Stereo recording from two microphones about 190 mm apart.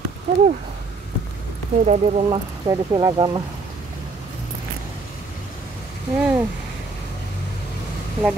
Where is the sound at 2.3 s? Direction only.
25° right (ahead or behind).